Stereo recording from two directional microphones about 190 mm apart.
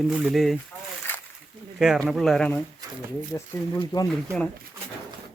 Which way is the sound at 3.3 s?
20° left (ahead or behind).